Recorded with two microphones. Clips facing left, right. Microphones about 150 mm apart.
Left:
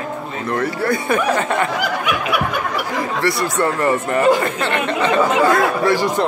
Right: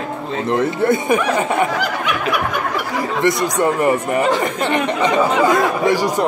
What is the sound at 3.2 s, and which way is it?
A man's voice, 20° right (ahead or behind).